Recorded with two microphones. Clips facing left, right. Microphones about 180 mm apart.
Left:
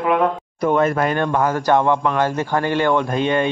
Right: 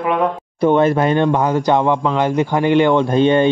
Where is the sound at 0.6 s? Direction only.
30° right (ahead or behind).